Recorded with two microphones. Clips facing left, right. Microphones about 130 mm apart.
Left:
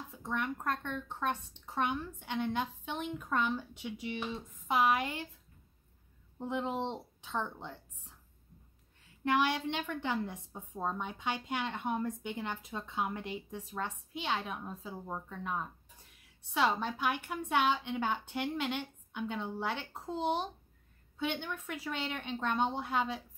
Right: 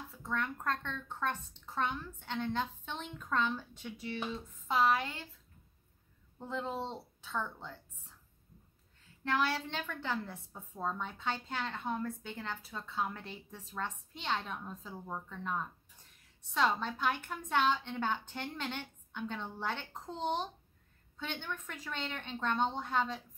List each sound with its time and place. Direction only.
0.1 s a woman's voice: 15° left (ahead or behind)
6.3 s a woman's voice: 15° left (ahead or behind)
9.2 s a woman's voice: 15° left (ahead or behind)